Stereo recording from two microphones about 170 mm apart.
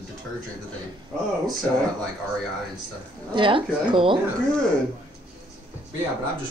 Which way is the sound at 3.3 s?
30° right (ahead or behind).